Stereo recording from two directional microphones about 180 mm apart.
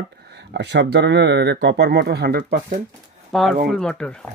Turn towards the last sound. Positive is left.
turn(degrees=5)  # may be behind; listen again after turning